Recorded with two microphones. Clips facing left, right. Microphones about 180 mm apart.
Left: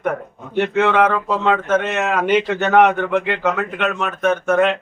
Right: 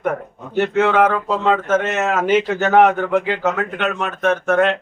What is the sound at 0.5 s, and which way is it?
Speech, 5° right (ahead or behind).